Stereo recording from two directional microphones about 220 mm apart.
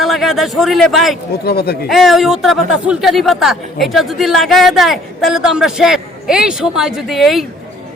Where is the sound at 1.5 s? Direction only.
45° left (ahead or behind).